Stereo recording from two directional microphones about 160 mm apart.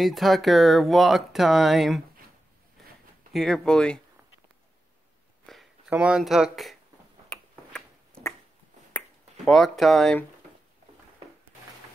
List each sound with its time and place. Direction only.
0.0 s speech: centre (ahead or behind)
3.3 s speech: 5° left (ahead or behind)
5.5 s speech: 5° right (ahead or behind)
7.3 s tick-tock: 5° left (ahead or behind)
9.4 s speech: centre (ahead or behind)